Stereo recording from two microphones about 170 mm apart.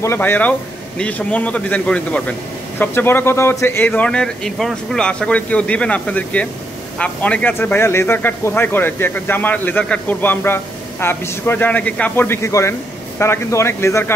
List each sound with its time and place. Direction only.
0.0 s speech: 15° left (ahead or behind)